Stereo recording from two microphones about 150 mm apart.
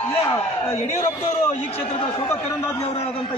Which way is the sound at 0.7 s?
50° left (ahead or behind).